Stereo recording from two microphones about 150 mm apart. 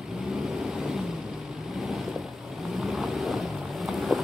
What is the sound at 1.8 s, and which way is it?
Boat, centre (ahead or behind).